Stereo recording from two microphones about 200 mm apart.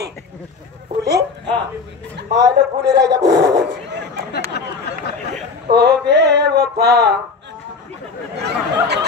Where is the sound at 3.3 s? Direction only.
55° right (ahead or behind).